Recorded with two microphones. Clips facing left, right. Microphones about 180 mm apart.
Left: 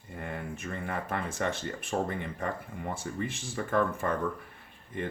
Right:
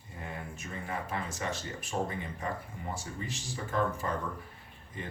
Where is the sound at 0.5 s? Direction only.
55° left (ahead or behind).